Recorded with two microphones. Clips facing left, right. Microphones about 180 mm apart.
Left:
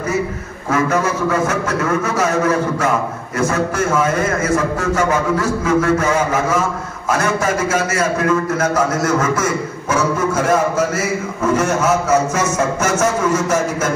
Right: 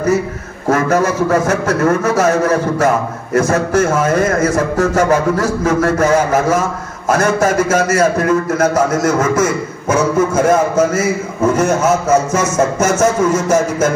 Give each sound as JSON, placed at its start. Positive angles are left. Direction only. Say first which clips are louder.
{"t": 0.7, "sound": "a man's voice", "louder": "right 4 dB", "side_deg": -40}
{"t": 9.8, "sound": "a man's voice", "louder": "right 4 dB", "side_deg": -45}
{"t": 13.0, "sound": "a man's voice", "louder": "right 4 dB", "side_deg": -40}